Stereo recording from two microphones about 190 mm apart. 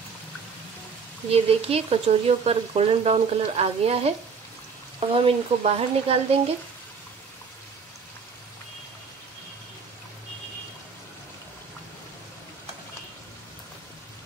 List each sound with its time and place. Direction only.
1.3 s speech: 30° right (ahead or behind)
5.1 s speech: 30° right (ahead or behind)